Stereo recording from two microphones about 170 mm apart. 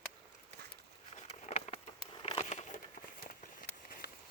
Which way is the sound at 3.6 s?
60° left (ahead or behind).